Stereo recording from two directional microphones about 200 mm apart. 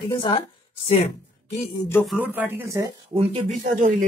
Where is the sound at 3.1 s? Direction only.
25° right (ahead or behind).